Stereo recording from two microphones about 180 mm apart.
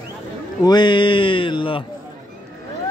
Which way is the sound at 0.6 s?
25° left (ahead or behind).